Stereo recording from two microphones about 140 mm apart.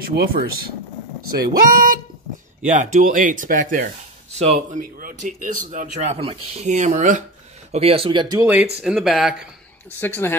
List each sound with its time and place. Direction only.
0.0 s speech: 90° right
2.6 s speech: 60° right (ahead or behind); by 3.9 s 90° right
4.4 s speech: 60° right (ahead or behind)
7.7 s speech: 45° right (ahead or behind)
8.8 s speech: 5° right (ahead or behind)
9.9 s a woman's voice: 15° left (ahead or behind)